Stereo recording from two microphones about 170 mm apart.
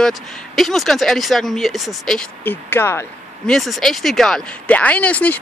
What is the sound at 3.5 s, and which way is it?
Speech, centre (ahead or behind).